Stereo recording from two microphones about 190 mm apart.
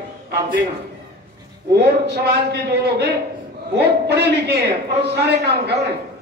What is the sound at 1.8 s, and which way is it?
A man's voice, 60° right (ahead or behind).